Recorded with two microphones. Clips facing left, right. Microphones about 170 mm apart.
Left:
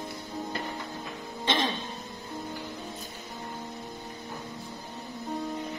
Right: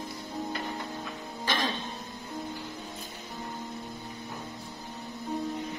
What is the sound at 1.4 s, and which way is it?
Music, 25° left (ahead or behind).